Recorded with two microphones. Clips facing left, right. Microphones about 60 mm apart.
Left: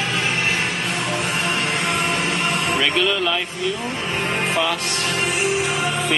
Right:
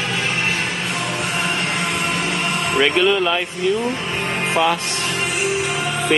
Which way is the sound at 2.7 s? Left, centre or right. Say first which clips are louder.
Right 7 dB; centre.